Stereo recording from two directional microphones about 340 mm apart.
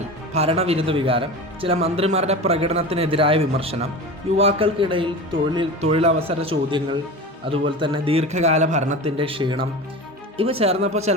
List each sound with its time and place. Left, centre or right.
0.3 s speech: centre